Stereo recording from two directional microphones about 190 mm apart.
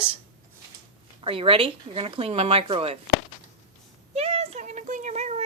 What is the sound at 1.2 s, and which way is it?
Speech, 30° right (ahead or behind).